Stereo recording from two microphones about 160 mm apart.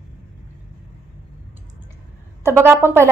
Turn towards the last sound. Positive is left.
turn(degrees=-15)  # may be behind; listen again after turning